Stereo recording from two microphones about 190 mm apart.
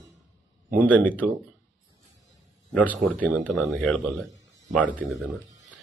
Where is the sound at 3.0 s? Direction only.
40° right (ahead or behind).